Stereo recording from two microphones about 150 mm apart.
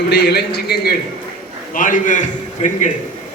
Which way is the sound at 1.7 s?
60° left (ahead or behind).